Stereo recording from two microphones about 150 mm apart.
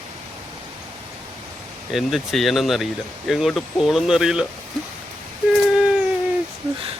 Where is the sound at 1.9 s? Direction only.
Centre (ahead or behind).